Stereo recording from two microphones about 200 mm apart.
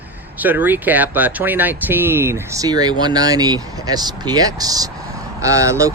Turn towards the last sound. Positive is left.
turn(degrees=-15)  # may be behind; listen again after turning